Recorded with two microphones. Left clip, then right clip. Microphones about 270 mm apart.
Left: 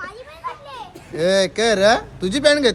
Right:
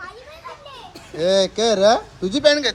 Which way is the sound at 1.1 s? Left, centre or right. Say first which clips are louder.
Even; left.